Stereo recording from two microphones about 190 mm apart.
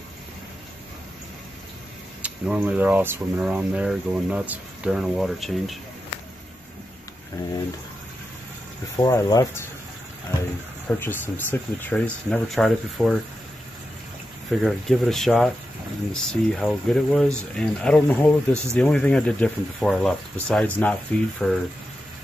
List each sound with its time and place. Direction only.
2.2 s speech: 5° right (ahead or behind)
8.9 s speech: 20° left (ahead or behind)
10.9 s speech: 10° left (ahead or behind)
14.5 s speech: centre (ahead or behind)
18.5 s speech: 15° right (ahead or behind)
18.8 s speech: 5° left (ahead or behind)